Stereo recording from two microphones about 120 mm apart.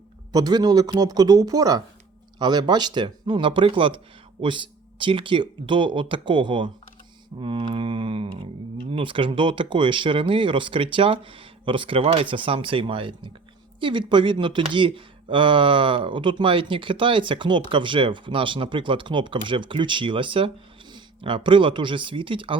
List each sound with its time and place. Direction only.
0.3 s speech: 35° right (ahead or behind)